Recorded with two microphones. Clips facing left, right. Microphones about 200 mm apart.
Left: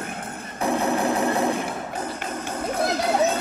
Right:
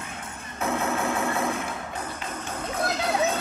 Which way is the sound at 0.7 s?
15° left (ahead or behind).